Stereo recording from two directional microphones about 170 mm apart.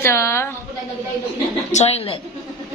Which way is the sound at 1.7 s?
40° left (ahead or behind).